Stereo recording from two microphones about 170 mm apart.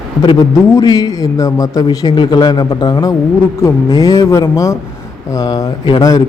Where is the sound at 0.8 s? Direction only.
20° left (ahead or behind).